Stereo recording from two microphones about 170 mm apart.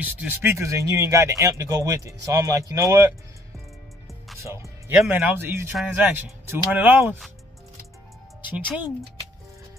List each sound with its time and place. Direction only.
0.0 s speech: 10° right (ahead or behind)
4.4 s music: 15° right (ahead or behind)
4.9 s speech: 5° right (ahead or behind)